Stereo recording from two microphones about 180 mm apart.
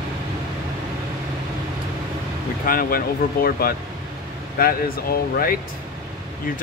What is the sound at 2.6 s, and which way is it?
Speech, 55° left (ahead or behind).